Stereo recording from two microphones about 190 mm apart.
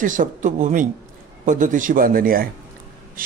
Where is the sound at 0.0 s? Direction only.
45° right (ahead or behind).